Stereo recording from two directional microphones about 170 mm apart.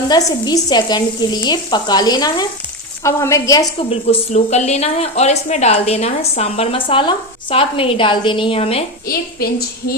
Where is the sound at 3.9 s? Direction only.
40° left (ahead or behind).